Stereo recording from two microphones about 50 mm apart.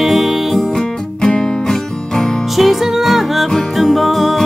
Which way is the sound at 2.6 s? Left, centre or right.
Centre.